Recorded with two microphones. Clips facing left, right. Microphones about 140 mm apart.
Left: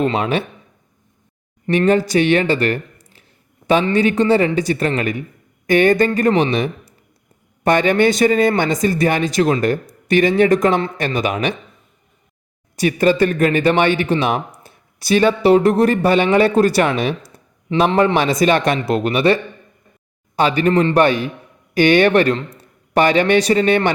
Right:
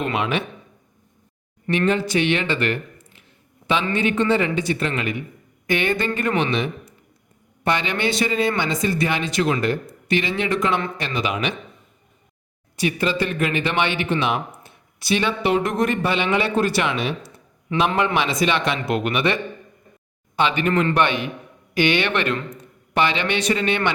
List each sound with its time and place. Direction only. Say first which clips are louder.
0.0 s speech: left 5 dB; 35° left (ahead or behind)
1.7 s speech: left 6 dB; 40° left (ahead or behind)
10.9 s speech: left 5 dB; 50° left (ahead or behind)
12.7 s a man's voice: left 7 dB; 45° left (ahead or behind)